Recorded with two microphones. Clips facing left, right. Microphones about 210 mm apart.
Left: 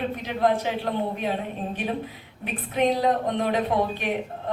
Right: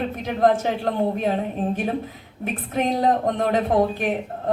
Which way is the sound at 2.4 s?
45° right (ahead or behind).